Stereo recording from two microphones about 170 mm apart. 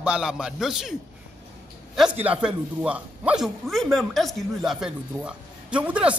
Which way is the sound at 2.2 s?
10° right (ahead or behind).